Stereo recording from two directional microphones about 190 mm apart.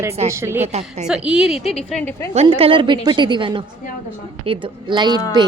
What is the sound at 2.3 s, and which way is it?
A woman's voice, 30° right (ahead or behind).